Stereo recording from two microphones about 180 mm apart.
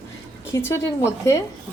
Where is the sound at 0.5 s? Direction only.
15° left (ahead or behind).